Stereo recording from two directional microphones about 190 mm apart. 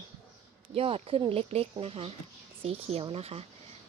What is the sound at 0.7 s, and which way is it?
Speech, 30° right (ahead or behind).